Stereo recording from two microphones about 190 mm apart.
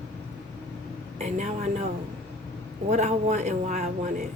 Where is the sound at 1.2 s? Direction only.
40° right (ahead or behind).